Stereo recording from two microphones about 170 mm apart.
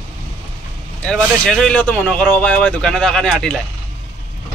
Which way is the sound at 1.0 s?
5° left (ahead or behind).